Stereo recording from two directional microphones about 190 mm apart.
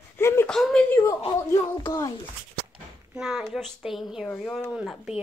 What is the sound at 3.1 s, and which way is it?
Speech, centre (ahead or behind).